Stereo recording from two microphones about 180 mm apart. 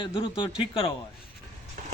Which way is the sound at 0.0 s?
30° left (ahead or behind).